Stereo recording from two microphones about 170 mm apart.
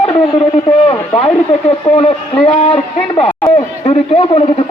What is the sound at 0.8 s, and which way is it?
A man's voice, 30° left (ahead or behind).